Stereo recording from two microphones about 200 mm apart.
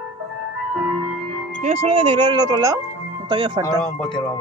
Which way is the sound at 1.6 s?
35° right (ahead or behind).